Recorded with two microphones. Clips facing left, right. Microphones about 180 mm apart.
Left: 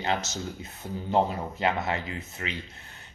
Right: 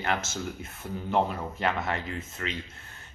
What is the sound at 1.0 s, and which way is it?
Speech, 25° left (ahead or behind).